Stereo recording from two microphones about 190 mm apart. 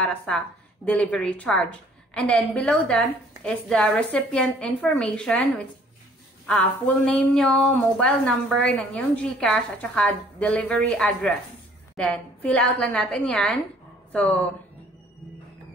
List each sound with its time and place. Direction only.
0.8 s a woman's voice: 5° left (ahead or behind)
7.1 s a woman's voice: 5° left (ahead or behind)